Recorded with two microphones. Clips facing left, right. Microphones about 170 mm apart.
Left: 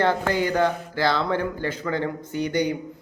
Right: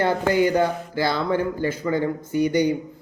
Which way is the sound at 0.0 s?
10° right (ahead or behind).